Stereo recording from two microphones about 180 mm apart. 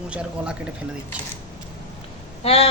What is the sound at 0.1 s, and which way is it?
Speech, 5° right (ahead or behind).